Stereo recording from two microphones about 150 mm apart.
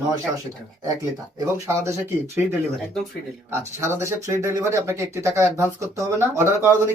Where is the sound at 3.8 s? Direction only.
15° right (ahead or behind).